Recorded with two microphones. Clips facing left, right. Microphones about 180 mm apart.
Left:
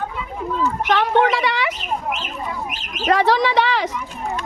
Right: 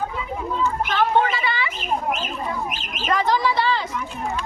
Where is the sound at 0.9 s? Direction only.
75° left (ahead or behind).